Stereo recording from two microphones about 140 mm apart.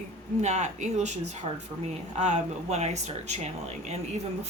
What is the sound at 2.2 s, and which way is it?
A woman's voice, 55° right (ahead or behind).